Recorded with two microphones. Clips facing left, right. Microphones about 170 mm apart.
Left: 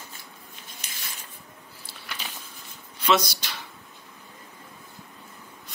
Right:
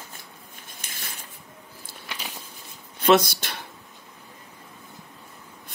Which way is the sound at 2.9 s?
55° right (ahead or behind).